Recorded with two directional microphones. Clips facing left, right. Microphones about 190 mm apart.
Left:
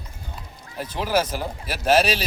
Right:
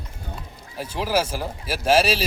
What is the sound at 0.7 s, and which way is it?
Speech, 5° right (ahead or behind).